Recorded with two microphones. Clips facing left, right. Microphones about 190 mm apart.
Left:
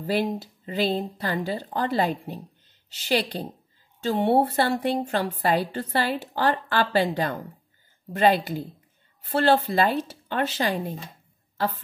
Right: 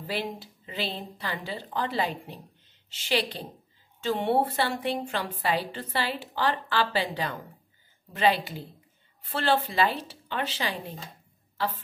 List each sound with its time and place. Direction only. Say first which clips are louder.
0.0 s a woman's voice: left 7 dB; 45° left (ahead or behind)